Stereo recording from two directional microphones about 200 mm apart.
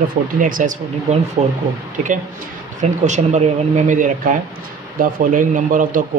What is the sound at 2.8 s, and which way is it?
Speech, 35° right (ahead or behind).